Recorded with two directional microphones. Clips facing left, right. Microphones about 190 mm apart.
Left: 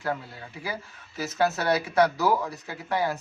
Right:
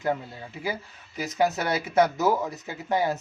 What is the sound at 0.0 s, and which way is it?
Speech, 20° right (ahead or behind).